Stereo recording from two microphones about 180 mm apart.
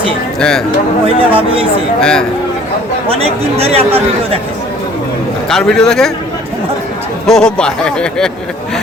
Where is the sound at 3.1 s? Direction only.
35° right (ahead or behind).